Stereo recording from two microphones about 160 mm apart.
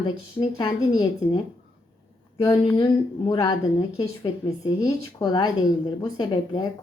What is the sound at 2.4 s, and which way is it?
Speech, 20° left (ahead or behind).